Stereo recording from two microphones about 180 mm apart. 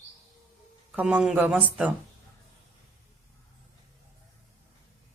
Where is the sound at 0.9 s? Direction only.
5° right (ahead or behind).